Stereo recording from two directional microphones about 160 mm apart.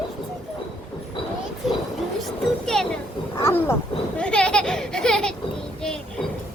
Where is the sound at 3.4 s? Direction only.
15° left (ahead or behind).